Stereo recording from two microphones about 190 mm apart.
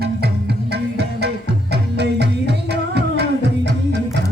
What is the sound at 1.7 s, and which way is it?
Music, 60° right (ahead or behind).